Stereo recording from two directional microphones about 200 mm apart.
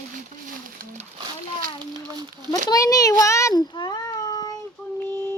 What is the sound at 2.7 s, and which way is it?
Speech, 15° left (ahead or behind).